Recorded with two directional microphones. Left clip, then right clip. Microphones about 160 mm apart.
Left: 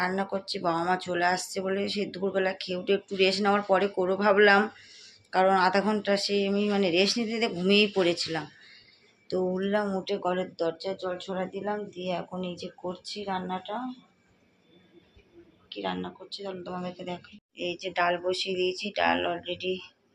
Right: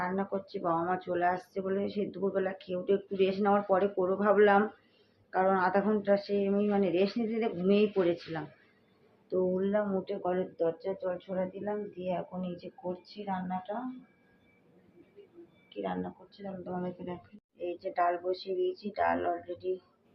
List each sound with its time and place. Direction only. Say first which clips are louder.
0.0 s speech: left 4 dB; 20° left (ahead or behind)
9.2 s speech: left 1 dB; 25° left (ahead or behind)
15.7 s speech: left 3 dB; 30° left (ahead or behind)